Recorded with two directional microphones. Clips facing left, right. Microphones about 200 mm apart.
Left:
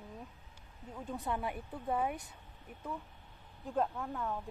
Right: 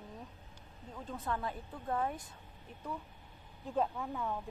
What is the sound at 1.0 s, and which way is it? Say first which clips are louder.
Speech: left 1 dB; 15° left (ahead or behind).